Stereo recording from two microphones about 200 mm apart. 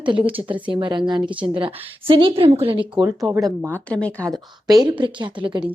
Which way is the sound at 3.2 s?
5° right (ahead or behind).